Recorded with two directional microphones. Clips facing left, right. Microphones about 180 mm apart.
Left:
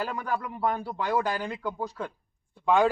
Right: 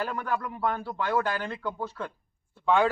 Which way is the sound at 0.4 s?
10° left (ahead or behind).